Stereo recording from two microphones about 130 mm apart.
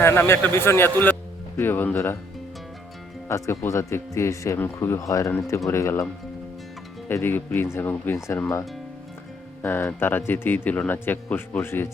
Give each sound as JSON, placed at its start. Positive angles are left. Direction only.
{"t": 0.0, "sound": "speech", "side_deg": 20}
{"t": 3.2, "sound": "speech", "side_deg": 20}
{"t": 7.1, "sound": "speech", "side_deg": 15}
{"t": 9.6, "sound": "speech", "side_deg": 15}